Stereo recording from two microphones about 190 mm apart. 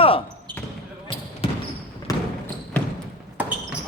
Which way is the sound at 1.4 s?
30° left (ahead or behind).